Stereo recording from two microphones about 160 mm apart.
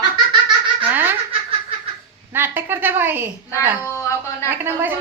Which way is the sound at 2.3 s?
15° right (ahead or behind).